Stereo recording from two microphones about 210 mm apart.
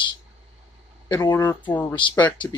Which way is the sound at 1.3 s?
10° left (ahead or behind).